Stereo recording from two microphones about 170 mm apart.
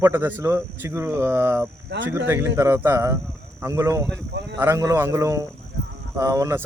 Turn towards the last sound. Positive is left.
turn(degrees=-15)  # may be behind; listen again after turning